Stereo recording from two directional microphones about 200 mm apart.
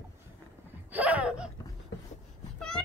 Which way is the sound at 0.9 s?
5° right (ahead or behind).